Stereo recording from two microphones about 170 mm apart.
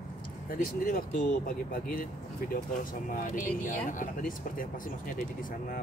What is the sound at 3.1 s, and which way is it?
Speech, 50° left (ahead or behind).